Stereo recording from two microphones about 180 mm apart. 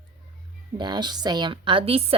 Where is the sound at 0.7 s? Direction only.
25° right (ahead or behind).